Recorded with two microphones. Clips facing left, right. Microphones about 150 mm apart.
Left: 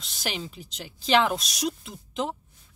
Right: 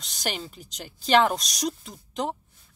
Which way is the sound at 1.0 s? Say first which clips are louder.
Right 2 dB; 45° right (ahead or behind).